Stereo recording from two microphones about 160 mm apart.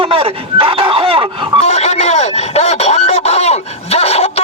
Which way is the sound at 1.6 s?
45° left (ahead or behind).